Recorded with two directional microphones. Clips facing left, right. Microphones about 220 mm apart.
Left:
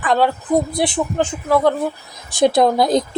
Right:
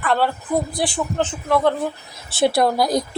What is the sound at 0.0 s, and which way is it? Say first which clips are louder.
A woman's voice: left 3 dB; 15° left (ahead or behind).